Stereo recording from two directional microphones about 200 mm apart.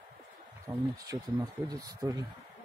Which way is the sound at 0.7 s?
20° right (ahead or behind).